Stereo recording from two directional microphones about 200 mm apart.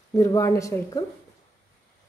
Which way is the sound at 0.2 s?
15° left (ahead or behind).